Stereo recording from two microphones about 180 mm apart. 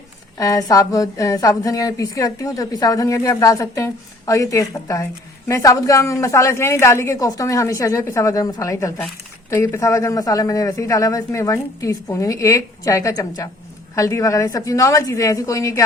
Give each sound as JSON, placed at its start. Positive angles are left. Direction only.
{"t": 0.3, "sound": "a woman's voice", "side_deg": 20}